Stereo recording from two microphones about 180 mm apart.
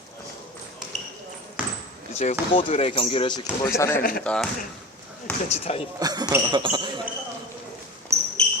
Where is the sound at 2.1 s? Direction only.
35° left (ahead or behind).